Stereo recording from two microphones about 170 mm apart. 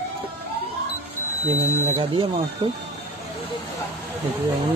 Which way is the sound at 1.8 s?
35° right (ahead or behind).